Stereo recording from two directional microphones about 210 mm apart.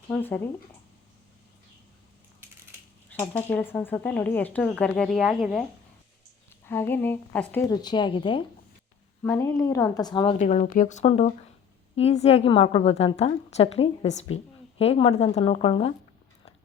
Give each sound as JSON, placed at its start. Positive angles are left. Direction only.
{"t": 0.1, "sound": "speech", "side_deg": 10}
{"t": 3.1, "sound": "speech", "side_deg": 10}
{"t": 6.7, "sound": "speech", "side_deg": 10}
{"t": 9.2, "sound": "speech", "side_deg": 10}
{"t": 10.3, "sound": "a woman's voice", "side_deg": 35}